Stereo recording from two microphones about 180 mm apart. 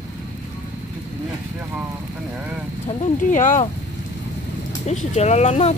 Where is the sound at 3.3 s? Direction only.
45° left (ahead or behind).